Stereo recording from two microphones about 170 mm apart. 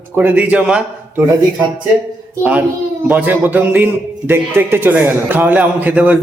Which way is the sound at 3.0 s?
10° right (ahead or behind).